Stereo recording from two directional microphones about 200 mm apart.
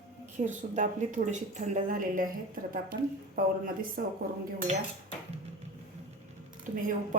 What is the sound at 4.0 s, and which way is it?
Speech, 45° right (ahead or behind).